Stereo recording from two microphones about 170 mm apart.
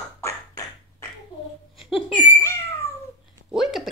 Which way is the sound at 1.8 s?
Centre (ahead or behind).